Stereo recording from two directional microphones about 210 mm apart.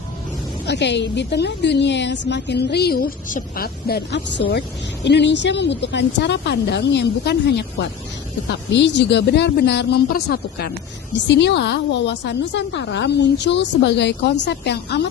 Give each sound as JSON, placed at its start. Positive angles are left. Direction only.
{"t": 0.6, "sound": "a woman's voice", "side_deg": 55}